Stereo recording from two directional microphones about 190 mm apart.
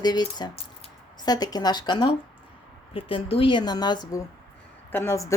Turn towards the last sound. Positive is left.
turn(degrees=15)  # may be behind; listen again after turning